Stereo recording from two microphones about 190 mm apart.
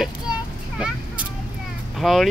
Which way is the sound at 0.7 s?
5° right (ahead or behind).